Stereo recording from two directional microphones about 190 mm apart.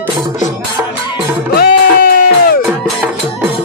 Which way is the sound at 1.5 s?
55° left (ahead or behind).